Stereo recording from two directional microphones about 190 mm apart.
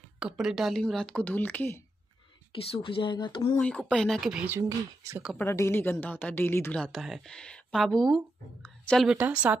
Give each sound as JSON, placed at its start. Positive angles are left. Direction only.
{"t": 0.2, "sound": "speech", "side_deg": 0}
{"t": 2.7, "sound": "speech", "side_deg": 30}
{"t": 3.5, "sound": "speech", "side_deg": 5}
{"t": 5.4, "sound": "a woman's voice", "side_deg": 15}
{"t": 6.8, "sound": "speech", "side_deg": 0}